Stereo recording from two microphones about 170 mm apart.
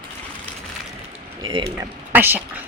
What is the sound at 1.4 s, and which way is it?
Speech, 30° right (ahead or behind).